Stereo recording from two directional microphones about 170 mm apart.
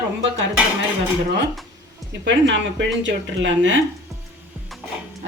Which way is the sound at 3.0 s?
90° right.